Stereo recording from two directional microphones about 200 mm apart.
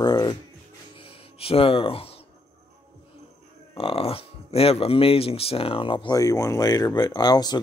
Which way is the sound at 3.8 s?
30° left (ahead or behind).